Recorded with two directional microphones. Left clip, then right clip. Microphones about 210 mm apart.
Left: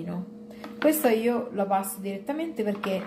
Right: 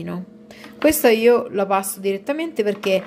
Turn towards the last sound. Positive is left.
turn(degrees=-50)  # may be behind; listen again after turning